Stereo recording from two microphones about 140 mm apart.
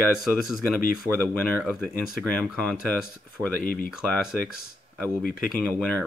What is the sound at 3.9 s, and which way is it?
Speech, 5° right (ahead or behind).